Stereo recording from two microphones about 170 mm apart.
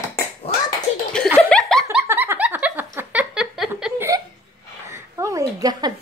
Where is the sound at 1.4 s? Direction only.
5° left (ahead or behind).